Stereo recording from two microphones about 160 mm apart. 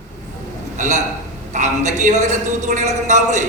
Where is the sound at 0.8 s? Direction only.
45° right (ahead or behind).